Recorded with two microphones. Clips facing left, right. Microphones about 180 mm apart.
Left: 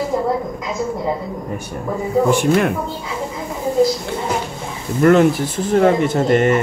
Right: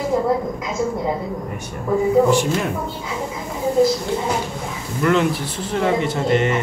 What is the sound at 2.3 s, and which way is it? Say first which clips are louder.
Speech: left 4 dB; 60° left (ahead or behind).